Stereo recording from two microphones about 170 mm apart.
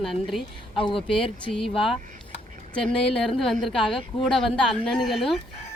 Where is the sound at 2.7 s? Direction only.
5° left (ahead or behind).